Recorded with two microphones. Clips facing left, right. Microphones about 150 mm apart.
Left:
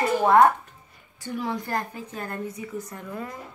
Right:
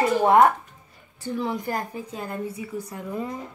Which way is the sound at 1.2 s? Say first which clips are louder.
Right 2 dB; 25° right (ahead or behind).